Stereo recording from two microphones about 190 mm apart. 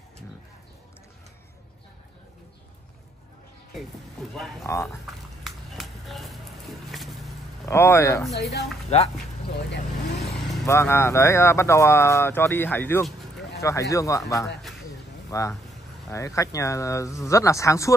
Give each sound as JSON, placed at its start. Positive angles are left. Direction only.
{"t": 4.3, "sound": "speech", "side_deg": 0}
{"t": 4.6, "sound": "speech", "side_deg": 15}
{"t": 5.4, "sound": "a sound", "side_deg": 0}
{"t": 6.9, "sound": "vehicle", "side_deg": 0}
{"t": 7.6, "sound": "speech", "side_deg": 15}
{"t": 8.9, "sound": "speech", "side_deg": 30}
{"t": 10.7, "sound": "speech", "side_deg": 15}
{"t": 15.3, "sound": "speech", "side_deg": 15}